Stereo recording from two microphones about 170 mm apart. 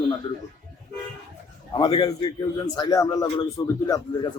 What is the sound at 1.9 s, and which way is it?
A man's voice, 30° left (ahead or behind).